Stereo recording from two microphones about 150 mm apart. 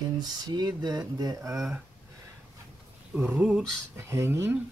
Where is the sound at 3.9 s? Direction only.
15° right (ahead or behind).